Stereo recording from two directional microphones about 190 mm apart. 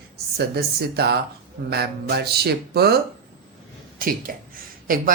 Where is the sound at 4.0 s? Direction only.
50° right (ahead or behind).